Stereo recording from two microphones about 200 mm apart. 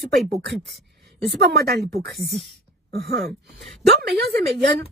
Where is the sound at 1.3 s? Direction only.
50° right (ahead or behind).